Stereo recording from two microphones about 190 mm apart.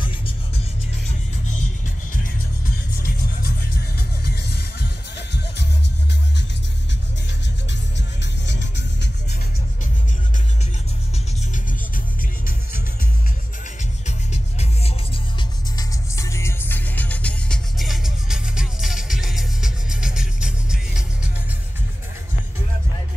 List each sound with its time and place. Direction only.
3.0 s music: 55° left (ahead or behind)
8.2 s music: 70° left (ahead or behind)
14.0 s music: 35° left (ahead or behind)
15.8 s music: 15° left (ahead or behind); by 21.0 s 5° right (ahead or behind)